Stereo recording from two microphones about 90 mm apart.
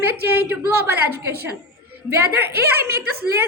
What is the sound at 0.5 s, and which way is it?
A woman's voice, 25° right (ahead or behind).